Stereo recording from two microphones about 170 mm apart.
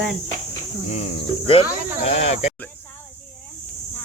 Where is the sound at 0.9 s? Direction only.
35° left (ahead or behind).